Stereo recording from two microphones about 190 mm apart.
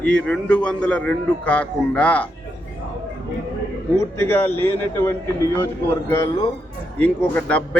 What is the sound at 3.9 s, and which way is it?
A man's voice, 10° left (ahead or behind).